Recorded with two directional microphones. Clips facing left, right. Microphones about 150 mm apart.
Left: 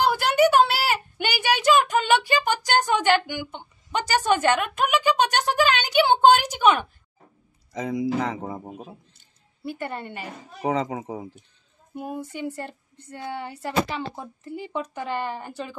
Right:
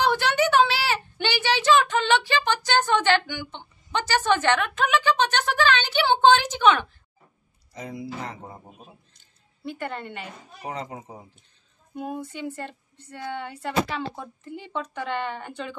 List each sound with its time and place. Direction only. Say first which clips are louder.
0.0 s a child's voice: left 3 dB; 10° left (ahead or behind)
7.7 s speech: left 9 dB; 90° left
9.6 s speech: left 1 dB; 10° left (ahead or behind)
10.6 s speech: left 9 dB; 90° left
11.9 s speech: even; 5° left (ahead or behind)